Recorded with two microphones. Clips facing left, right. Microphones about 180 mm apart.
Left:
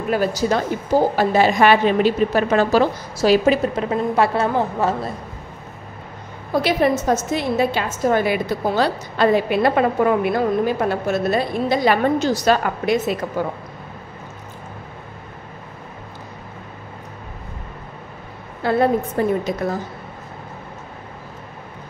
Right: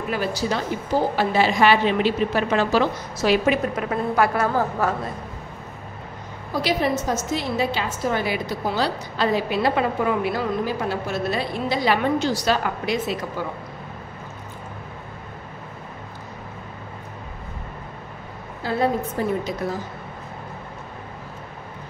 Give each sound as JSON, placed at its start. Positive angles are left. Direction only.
{"t": 0.1, "sound": "a woman's voice", "side_deg": 45}
{"t": 6.5, "sound": "a woman's voice", "side_deg": 55}
{"t": 18.6, "sound": "a woman's voice", "side_deg": 60}